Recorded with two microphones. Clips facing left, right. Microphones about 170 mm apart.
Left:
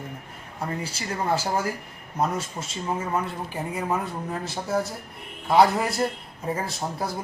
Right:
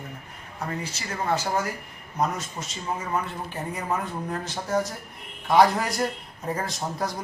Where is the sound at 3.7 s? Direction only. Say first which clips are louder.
Left 2 dB; 5° left (ahead or behind).